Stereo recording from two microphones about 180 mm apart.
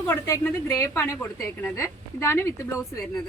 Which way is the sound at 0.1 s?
15° left (ahead or behind).